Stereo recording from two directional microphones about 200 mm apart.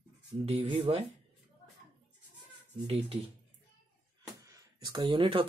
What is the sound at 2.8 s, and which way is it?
Speech, 30° right (ahead or behind).